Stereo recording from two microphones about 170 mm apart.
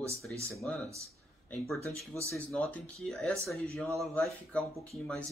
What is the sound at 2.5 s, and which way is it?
Speech, 5° left (ahead or behind).